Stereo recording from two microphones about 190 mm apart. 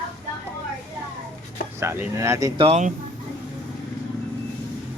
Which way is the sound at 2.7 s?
40° right (ahead or behind).